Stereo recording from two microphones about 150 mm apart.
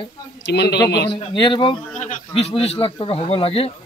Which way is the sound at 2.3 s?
40° left (ahead or behind).